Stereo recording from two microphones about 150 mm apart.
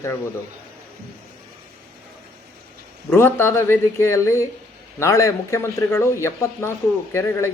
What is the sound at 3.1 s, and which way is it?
A man's voice, 15° left (ahead or behind).